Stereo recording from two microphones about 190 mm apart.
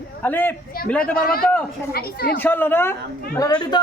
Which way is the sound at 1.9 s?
55° left (ahead or behind).